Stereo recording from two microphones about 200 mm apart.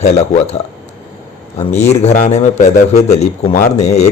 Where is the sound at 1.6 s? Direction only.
35° left (ahead or behind).